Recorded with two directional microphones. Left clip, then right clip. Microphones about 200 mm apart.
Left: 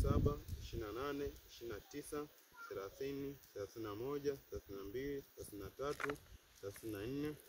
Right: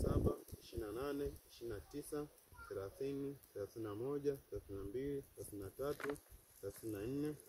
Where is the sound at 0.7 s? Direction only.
Centre (ahead or behind).